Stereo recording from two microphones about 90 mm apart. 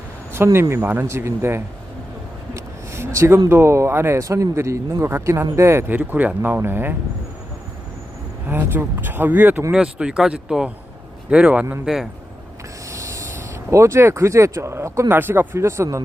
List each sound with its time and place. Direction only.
0.3 s speech: 30° right (ahead or behind)
2.6 s a sound: 30° right (ahead or behind)
3.5 s speech: 30° right (ahead or behind)
6.0 s speech: 20° right (ahead or behind)
8.4 s speech: 20° right (ahead or behind)
9.7 s speech: 10° right (ahead or behind)
12.9 s speech: 35° right (ahead or behind)